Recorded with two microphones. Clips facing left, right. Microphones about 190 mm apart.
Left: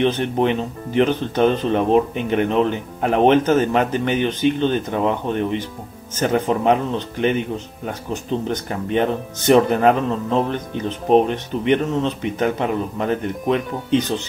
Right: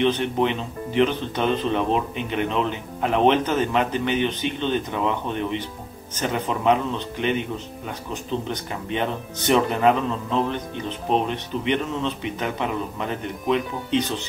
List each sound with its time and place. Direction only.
0.0 s speech: 45° left (ahead or behind)